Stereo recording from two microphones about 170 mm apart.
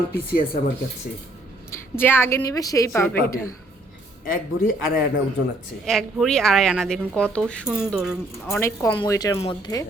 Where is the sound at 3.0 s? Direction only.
5° left (ahead or behind).